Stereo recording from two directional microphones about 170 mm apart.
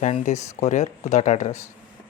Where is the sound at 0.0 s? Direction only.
45° left (ahead or behind).